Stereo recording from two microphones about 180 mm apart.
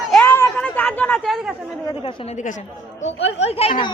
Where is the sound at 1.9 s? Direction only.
30° left (ahead or behind).